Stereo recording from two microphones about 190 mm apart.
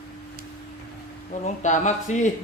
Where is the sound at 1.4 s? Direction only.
40° left (ahead or behind).